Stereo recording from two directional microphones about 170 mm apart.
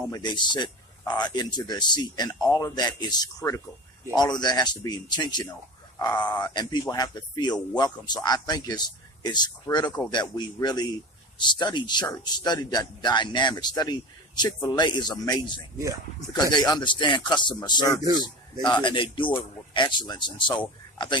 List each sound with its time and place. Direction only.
0.1 s a man's voice: 25° left (ahead or behind)
18.0 s speech: 20° right (ahead or behind)
18.6 s a man's voice: 25° left (ahead or behind)